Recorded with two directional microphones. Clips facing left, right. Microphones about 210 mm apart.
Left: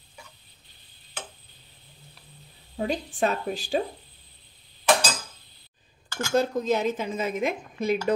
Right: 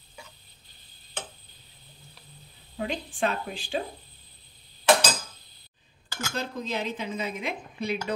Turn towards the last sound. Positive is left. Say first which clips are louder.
# left 6 dB
turn(degrees=45)  # may be behind; listen again after turning